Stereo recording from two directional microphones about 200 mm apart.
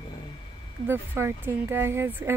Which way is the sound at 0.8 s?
10° right (ahead or behind).